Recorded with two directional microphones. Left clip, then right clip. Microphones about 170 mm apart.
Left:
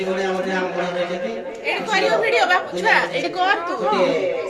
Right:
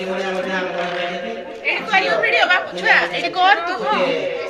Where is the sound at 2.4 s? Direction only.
90° left; by 3.6 s 65° left (ahead or behind).